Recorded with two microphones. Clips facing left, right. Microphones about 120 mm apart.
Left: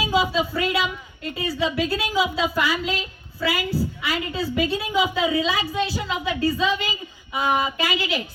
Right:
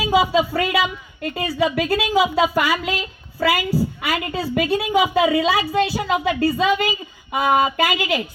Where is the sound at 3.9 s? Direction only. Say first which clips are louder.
Right 3 dB; 55° right (ahead or behind).